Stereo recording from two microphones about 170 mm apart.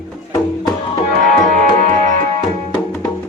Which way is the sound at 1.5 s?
45° right (ahead or behind).